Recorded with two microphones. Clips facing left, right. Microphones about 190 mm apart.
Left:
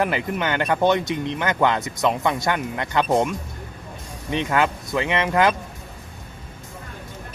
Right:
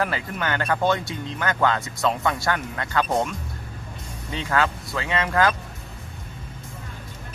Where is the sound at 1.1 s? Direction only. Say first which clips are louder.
Left 7 dB; 70° left (ahead or behind).